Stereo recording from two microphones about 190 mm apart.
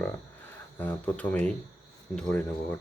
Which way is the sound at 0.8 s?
10° left (ahead or behind).